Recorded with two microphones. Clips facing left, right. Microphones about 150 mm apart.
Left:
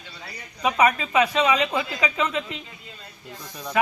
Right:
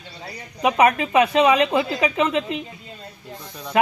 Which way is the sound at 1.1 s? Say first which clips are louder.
Right 4 dB; 60° right (ahead or behind).